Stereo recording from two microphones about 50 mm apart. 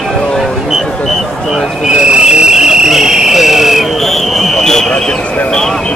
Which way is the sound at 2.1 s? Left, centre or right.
Centre.